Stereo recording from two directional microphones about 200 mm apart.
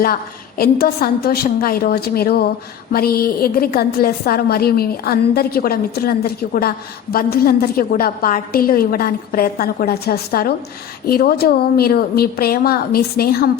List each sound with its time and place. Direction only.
0.0 s a woman's voice: 45° left (ahead or behind)